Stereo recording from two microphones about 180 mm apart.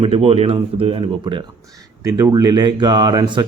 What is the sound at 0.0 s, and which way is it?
Speech, 35° right (ahead or behind).